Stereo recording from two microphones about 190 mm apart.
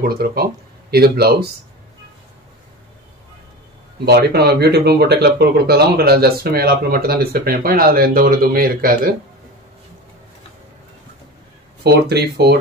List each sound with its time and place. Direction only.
0.0 s speech: 50° right (ahead or behind)
4.0 s speech: 60° right (ahead or behind)
11.8 s speech: 60° right (ahead or behind)